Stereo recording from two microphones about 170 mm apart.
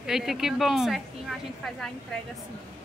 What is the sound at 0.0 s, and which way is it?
Speech, centre (ahead or behind).